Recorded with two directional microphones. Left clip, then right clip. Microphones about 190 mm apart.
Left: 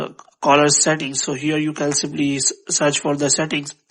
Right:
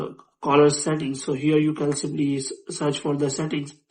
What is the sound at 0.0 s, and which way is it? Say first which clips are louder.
Speech: left 8 dB; 40° left (ahead or behind).